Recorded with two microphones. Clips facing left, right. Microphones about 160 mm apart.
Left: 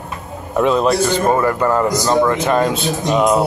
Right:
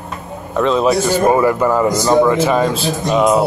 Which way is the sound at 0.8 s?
10° right (ahead or behind).